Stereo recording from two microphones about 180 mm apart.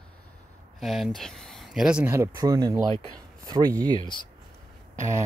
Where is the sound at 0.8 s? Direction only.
Centre (ahead or behind); by 4.0 s 20° right (ahead or behind).